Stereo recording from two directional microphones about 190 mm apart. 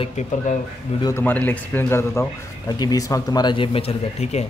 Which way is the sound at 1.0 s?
10° left (ahead or behind).